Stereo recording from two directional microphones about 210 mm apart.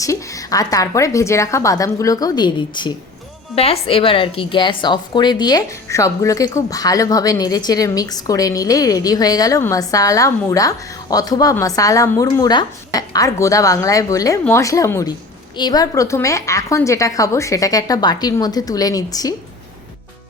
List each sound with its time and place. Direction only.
0.0 s a woman's voice: 15° left (ahead or behind)